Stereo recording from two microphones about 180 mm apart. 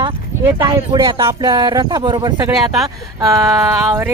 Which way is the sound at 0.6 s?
25° right (ahead or behind).